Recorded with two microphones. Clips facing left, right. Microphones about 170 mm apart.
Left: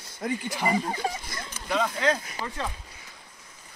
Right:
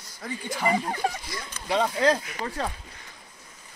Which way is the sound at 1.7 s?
35° right (ahead or behind).